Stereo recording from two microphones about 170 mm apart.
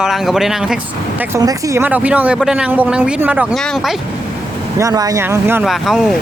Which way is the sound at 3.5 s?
Centre (ahead or behind).